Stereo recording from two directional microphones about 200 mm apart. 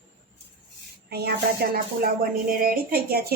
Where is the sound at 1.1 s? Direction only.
50° right (ahead or behind).